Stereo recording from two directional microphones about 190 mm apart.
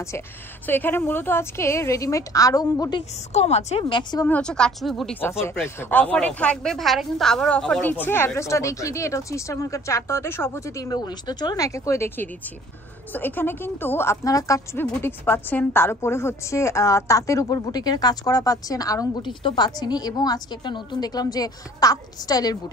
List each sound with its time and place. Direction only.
0.7 s a woman's voice: 10° left (ahead or behind)
3.3 s a woman's voice: 35° left (ahead or behind)
4.3 s speech: 5° left (ahead or behind)
5.4 s a woman's voice: 15° left (ahead or behind)